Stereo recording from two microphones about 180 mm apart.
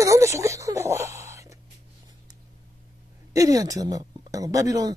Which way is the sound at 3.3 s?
20° right (ahead or behind).